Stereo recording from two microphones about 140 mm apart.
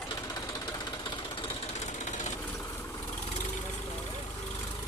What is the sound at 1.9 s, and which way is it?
Vehicle, 60° left (ahead or behind).